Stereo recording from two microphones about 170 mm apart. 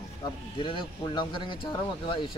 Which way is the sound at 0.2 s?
30° left (ahead or behind).